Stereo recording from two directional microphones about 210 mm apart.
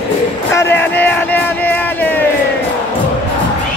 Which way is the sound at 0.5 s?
10° left (ahead or behind).